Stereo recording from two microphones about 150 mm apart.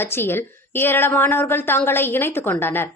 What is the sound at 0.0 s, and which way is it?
A woman's voice, 15° left (ahead or behind).